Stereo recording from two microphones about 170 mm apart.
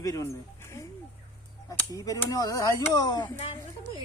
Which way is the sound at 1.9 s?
20° left (ahead or behind).